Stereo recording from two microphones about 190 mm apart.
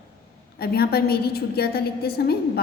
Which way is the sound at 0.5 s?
55° left (ahead or behind).